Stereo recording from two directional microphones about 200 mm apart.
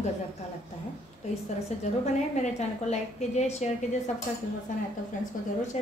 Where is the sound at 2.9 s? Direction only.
35° left (ahead or behind).